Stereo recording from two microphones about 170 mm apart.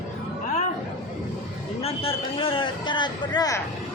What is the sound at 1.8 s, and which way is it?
A man's voice, 35° left (ahead or behind).